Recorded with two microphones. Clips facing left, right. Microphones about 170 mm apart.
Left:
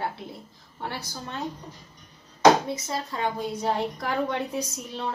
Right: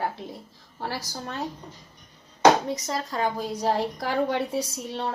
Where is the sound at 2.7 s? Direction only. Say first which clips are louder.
Right 2 dB; 40° right (ahead or behind).